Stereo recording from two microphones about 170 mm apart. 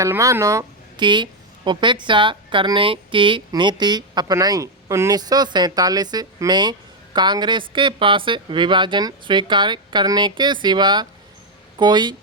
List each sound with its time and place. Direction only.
0.0 s a woman's voice: 20° right (ahead or behind)